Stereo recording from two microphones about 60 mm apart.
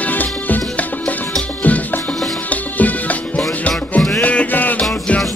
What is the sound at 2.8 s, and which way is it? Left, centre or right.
Music, left.